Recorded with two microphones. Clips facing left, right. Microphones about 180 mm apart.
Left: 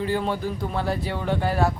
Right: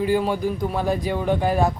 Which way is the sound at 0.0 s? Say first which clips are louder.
Right 4 dB; 10° right (ahead or behind).